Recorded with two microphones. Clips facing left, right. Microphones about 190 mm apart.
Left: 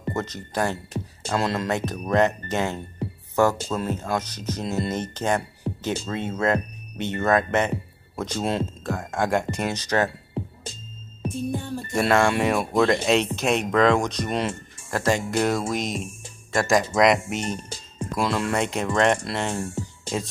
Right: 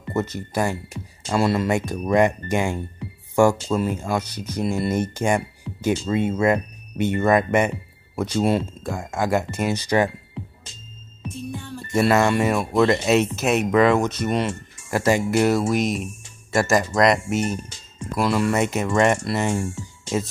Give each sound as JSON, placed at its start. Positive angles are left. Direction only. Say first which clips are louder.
{"t": 0.1, "sound": "speech", "louder": "right 4 dB", "side_deg": -10}
{"t": 5.7, "sound": "music", "louder": "left 6 dB", "side_deg": 50}
{"t": 6.0, "sound": "speech", "louder": "right 4 dB", "side_deg": -10}
{"t": 11.2, "sound": "music", "louder": "left 4 dB", "side_deg": 35}
{"t": 11.9, "sound": "speech", "louder": "right 2 dB", "side_deg": -5}